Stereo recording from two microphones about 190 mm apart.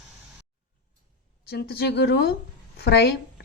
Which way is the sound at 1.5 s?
60° left (ahead or behind).